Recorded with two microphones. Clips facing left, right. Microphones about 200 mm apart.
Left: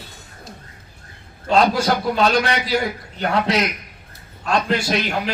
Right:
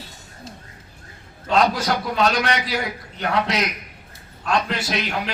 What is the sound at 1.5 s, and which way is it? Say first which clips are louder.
A man's voice: left 3 dB; 30° left (ahead or behind).